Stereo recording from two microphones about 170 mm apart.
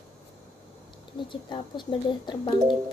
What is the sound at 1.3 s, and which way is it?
Speech, 30° left (ahead or behind).